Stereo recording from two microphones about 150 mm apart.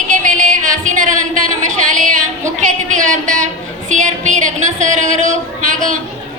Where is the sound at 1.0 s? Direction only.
60° right (ahead or behind).